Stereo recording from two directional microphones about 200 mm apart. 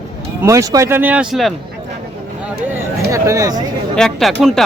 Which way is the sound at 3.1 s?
15° right (ahead or behind).